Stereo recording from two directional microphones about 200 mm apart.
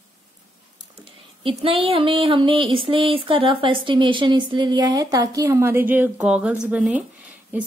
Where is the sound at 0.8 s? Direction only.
25° right (ahead or behind).